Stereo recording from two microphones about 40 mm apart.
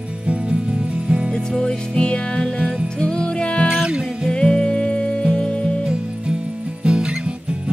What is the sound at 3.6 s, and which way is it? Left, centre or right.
Music, centre.